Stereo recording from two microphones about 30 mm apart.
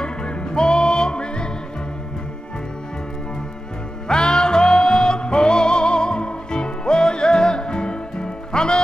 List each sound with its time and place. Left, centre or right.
0.0 s music: left
4.1 s music: left